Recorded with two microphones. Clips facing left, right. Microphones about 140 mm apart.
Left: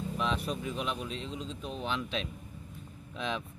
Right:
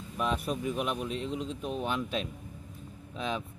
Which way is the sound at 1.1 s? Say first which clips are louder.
Right 5 dB; 55° right (ahead or behind).